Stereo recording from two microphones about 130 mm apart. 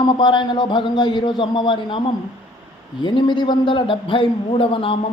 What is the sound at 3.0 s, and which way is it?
A man's voice, 35° left (ahead or behind).